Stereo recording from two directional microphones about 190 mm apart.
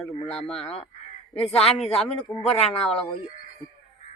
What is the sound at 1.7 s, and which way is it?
A man's voice, 30° left (ahead or behind).